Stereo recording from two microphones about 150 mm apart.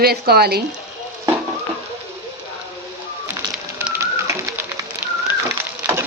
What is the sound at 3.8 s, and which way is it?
Music, 15° right (ahead or behind).